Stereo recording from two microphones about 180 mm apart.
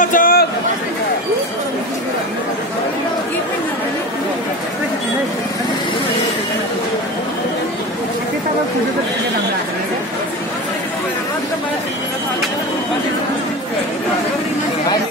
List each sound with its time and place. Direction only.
0.0 s chatter: 50° left (ahead or behind)